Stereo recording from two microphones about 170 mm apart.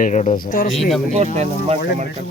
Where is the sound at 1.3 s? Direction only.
40° right (ahead or behind).